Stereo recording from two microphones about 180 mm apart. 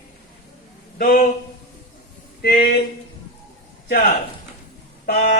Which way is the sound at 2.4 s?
55° left (ahead or behind).